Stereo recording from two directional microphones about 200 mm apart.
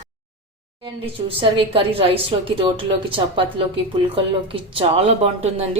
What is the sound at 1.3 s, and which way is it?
A woman's voice, 25° right (ahead or behind).